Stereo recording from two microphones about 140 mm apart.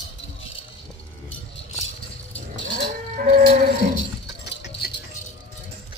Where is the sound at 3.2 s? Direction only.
80° right.